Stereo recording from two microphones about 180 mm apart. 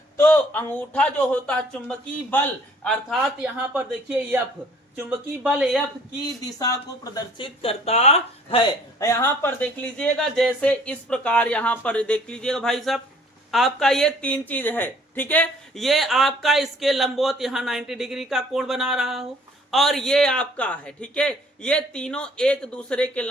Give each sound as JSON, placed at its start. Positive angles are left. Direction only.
{"t": 0.2, "sound": "speech", "side_deg": 15}
{"t": 3.2, "sound": "speech", "side_deg": -5}
{"t": 6.6, "sound": "speech", "side_deg": 20}
{"t": 9.0, "sound": "speech", "side_deg": 15}